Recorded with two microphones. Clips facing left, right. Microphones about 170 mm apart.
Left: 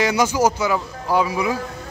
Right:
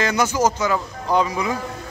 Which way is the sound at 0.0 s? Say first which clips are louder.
Left 2 dB; 10° left (ahead or behind).